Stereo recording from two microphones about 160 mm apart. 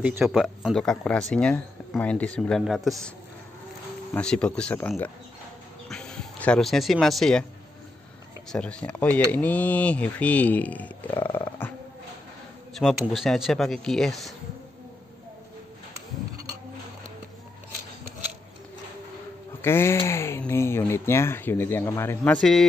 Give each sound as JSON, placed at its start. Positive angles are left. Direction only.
{"t": 0.0, "sound": "speech", "side_deg": -5}
{"t": 4.1, "sound": "speech", "side_deg": 5}
{"t": 8.5, "sound": "speech", "side_deg": 5}
{"t": 12.7, "sound": "speech", "side_deg": 0}
{"t": 19.6, "sound": "speech", "side_deg": 15}